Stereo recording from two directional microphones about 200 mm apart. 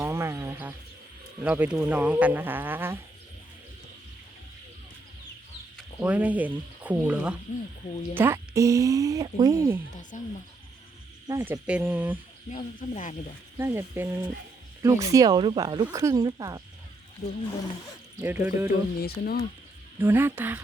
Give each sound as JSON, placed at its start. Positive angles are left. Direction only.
{"t": 0.0, "sound": "a sound", "side_deg": -15}
{"t": 1.4, "sound": "speech", "side_deg": -10}
{"t": 6.0, "sound": "speech", "side_deg": -5}
{"t": 9.9, "sound": "speech", "side_deg": 40}
{"t": 11.3, "sound": "speech", "side_deg": -15}
{"t": 12.5, "sound": "speech", "side_deg": 40}
{"t": 13.6, "sound": "speech", "side_deg": -10}
{"t": 17.2, "sound": "speech", "side_deg": 35}
{"t": 18.2, "sound": "speech", "side_deg": -10}
{"t": 18.9, "sound": "speech", "side_deg": 50}
{"t": 20.0, "sound": "speech", "side_deg": -10}